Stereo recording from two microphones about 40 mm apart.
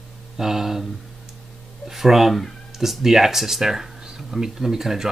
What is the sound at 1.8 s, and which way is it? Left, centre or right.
Speech, centre.